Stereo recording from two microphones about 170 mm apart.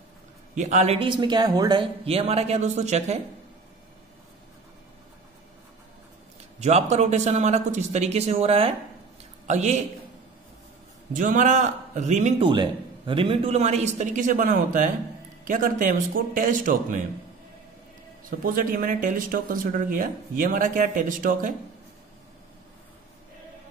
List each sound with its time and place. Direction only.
0.6 s speech: 45° right (ahead or behind)
6.6 s speech: 40° right (ahead or behind)
11.1 s speech: 50° right (ahead or behind)
12.4 s speech: 30° right (ahead or behind); by 17.0 s 50° right (ahead or behind)
18.4 s speech: 55° right (ahead or behind)